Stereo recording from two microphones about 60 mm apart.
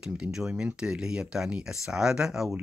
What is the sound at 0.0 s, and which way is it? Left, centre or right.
Speech, centre.